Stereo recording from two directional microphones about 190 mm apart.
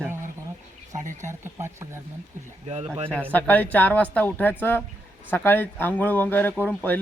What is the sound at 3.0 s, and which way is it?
Speech, 5° left (ahead or behind).